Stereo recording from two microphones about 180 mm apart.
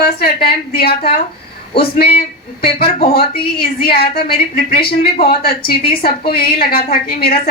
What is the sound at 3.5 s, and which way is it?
A woman's voice, 60° left (ahead or behind).